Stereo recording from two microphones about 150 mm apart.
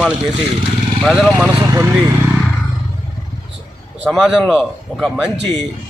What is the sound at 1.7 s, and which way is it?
Speech, 15° right (ahead or behind).